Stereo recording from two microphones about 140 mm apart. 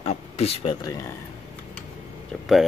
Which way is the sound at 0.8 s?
25° left (ahead or behind).